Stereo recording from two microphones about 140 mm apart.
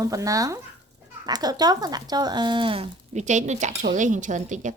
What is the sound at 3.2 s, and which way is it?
A woman's voice, 60° right (ahead or behind).